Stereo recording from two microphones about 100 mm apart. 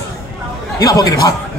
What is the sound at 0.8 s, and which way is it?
Speech, 40° left (ahead or behind).